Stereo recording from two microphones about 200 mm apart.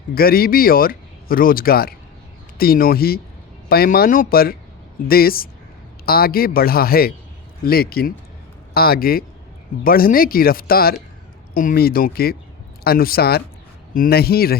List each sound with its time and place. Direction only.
0.1 s speech: 50° left (ahead or behind)